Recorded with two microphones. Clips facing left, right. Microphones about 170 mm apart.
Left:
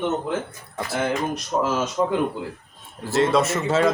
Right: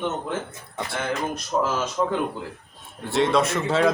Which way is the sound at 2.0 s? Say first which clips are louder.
Left 1 dB; 15° left (ahead or behind).